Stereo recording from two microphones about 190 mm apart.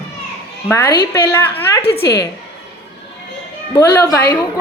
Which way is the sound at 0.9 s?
10° left (ahead or behind).